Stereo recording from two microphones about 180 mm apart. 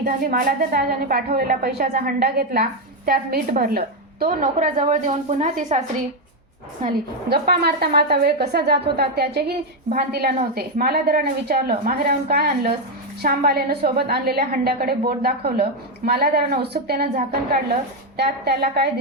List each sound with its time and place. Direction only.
0.0 s a woman's voice: 55° right (ahead or behind)
6.8 s a woman's voice: 60° right (ahead or behind)